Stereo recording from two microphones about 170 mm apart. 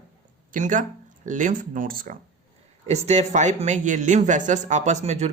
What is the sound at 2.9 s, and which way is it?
Speech, 40° right (ahead or behind).